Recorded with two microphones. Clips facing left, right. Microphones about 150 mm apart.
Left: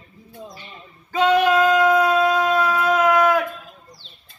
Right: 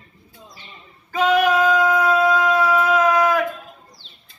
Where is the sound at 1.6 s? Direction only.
20° left (ahead or behind).